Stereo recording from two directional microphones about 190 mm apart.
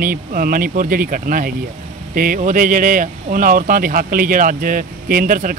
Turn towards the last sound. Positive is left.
turn(degrees=-45)  # may be behind; listen again after turning